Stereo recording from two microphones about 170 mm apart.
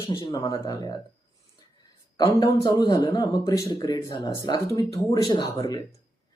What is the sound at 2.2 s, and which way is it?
Speech, 20° left (ahead or behind).